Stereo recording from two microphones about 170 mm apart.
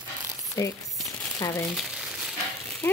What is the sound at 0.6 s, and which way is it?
Speech, 20° left (ahead or behind).